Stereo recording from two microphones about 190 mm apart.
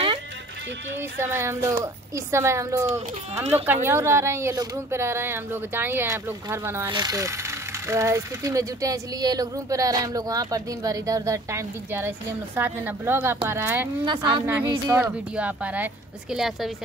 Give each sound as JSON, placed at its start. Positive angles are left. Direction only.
{"t": 1.2, "sound": "speech", "side_deg": -15}
{"t": 14.0, "sound": "a woman's voice", "side_deg": -25}
{"t": 14.4, "sound": "speech", "side_deg": -10}